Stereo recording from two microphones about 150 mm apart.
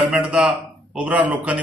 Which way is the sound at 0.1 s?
5° right (ahead or behind).